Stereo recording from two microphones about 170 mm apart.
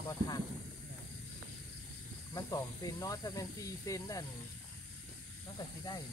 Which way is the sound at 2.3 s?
20° left (ahead or behind).